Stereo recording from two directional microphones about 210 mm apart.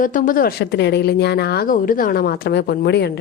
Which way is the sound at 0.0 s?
40° left (ahead or behind).